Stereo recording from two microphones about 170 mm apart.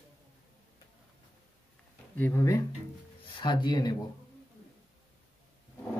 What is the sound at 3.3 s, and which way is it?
Speech, 30° left (ahead or behind).